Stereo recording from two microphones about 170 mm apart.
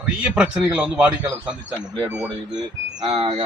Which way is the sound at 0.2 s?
5° right (ahead or behind).